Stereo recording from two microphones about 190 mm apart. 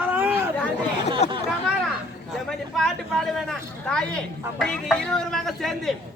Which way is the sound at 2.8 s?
Centre (ahead or behind).